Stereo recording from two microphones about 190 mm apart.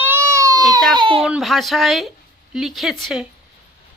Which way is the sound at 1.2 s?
Centre (ahead or behind).